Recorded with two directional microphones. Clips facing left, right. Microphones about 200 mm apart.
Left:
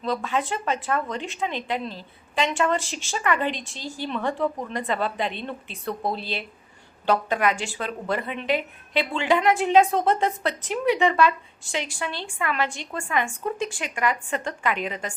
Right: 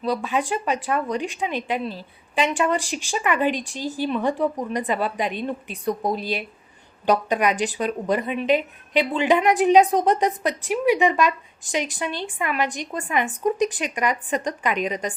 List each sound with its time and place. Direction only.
0.0 s speech: 15° right (ahead or behind)